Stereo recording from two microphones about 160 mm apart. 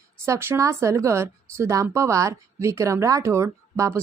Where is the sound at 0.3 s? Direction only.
15° right (ahead or behind).